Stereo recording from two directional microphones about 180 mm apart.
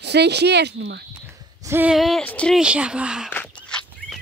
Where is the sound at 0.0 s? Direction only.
70° right (ahead or behind).